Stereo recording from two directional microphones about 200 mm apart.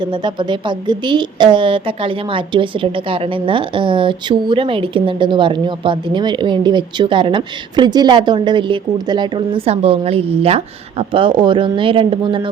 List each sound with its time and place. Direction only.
0.0 s a woman's voice: 25° right (ahead or behind)